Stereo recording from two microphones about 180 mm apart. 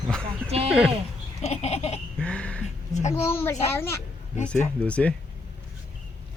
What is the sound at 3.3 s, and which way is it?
Speech, 15° left (ahead or behind).